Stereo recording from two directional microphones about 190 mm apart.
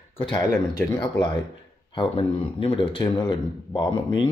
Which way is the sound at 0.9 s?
25° left (ahead or behind).